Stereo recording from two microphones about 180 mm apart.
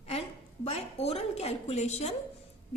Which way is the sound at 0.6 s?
35° left (ahead or behind).